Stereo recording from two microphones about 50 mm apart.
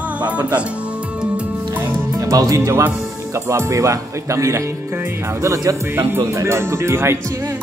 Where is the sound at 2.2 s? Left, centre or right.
Right.